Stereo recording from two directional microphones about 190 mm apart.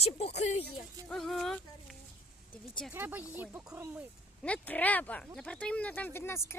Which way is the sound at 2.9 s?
10° right (ahead or behind).